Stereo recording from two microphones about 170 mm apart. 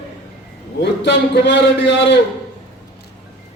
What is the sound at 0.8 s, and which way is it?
A man's voice, 90° left.